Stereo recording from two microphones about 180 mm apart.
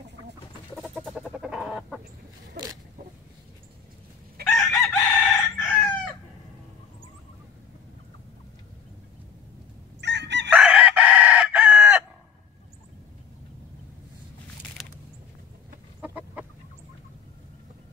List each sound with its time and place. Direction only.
0.7 s chicken: 5° right (ahead or behind)
4.5 s chicken: centre (ahead or behind)
9.9 s chicken: 75° right (ahead or behind)
10.5 s chicken: 5° right (ahead or behind)
14.8 s a sound: centre (ahead or behind)
16.0 s chicken: 10° right (ahead or behind)